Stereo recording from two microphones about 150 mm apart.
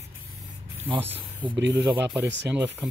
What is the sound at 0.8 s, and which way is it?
Speech, 40° right (ahead or behind).